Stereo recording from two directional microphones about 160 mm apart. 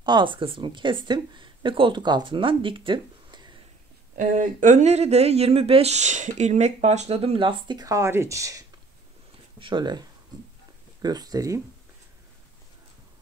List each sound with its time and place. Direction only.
0.0 s speech: 30° right (ahead or behind)
4.2 s speech: 55° right (ahead or behind); by 8.6 s 20° right (ahead or behind)
9.6 s speech: 30° right (ahead or behind)